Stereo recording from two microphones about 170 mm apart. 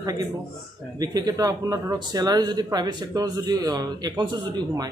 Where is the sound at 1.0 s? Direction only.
20° right (ahead or behind).